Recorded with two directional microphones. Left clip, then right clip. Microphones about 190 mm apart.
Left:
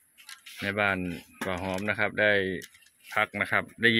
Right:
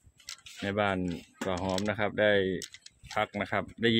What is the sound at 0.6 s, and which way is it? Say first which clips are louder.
Speech: left 2 dB; 15° right (ahead or behind).